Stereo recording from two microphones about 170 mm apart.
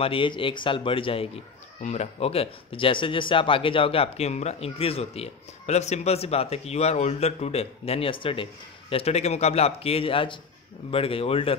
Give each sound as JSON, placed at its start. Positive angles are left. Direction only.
{"t": 0.0, "sound": "a man's voice", "side_deg": 30}